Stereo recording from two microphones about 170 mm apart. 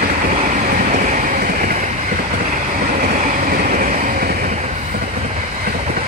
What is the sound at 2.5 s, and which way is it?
Train, 50° right (ahead or behind).